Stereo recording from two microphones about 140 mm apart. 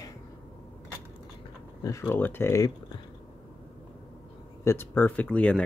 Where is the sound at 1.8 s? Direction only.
20° left (ahead or behind).